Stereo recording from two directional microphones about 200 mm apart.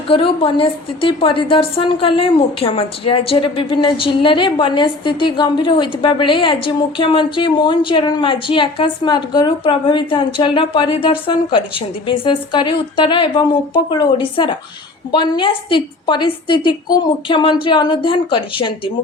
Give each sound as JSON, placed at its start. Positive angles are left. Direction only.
{"t": 0.1, "sound": "a woman's voice", "side_deg": 25}